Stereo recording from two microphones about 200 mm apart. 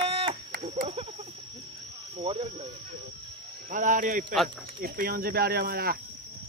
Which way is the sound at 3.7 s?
40° right (ahead or behind).